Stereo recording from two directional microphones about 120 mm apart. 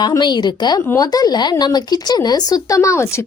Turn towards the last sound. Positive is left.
turn(degrees=25)  # may be behind; listen again after turning